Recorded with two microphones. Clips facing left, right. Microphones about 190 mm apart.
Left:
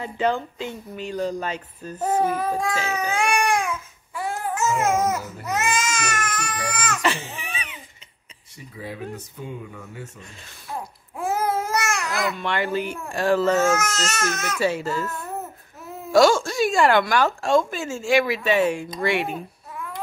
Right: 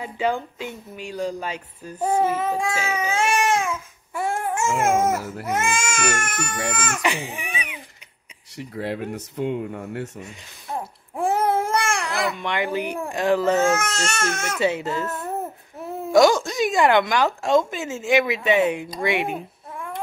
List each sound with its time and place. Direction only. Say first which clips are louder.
0.0 s speech: left 1 dB; 10° right (ahead or behind)
3.2 s baby cry: right 1 dB; 25° right (ahead or behind)
4.1 s babbling: right 3 dB; 50° right (ahead or behind)
5.4 s speech: right 1 dB; 50° right (ahead or behind)
7.0 s speech: even; 15° right (ahead or behind)
8.5 s speech: right 6 dB; 80° right
10.2 s a sound: right 4 dB; 20° right (ahead or behind)
11.4 s babbling: right 3 dB; 55° right (ahead or behind)
11.7 s babbling: right 2 dB; 30° right (ahead or behind)
12.4 s speech: even; 15° right (ahead or behind)
13.7 s speech: even; 25° right (ahead or behind)